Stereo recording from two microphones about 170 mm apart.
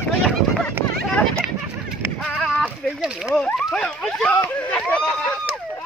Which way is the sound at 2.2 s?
Centre (ahead or behind).